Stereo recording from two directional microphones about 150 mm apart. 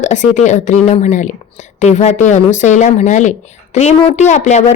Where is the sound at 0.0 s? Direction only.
55° left (ahead or behind).